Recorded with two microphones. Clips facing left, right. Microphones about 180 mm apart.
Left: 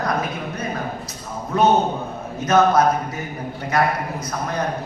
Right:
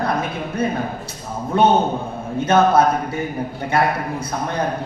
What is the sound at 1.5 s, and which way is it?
A man's voice, 30° right (ahead or behind).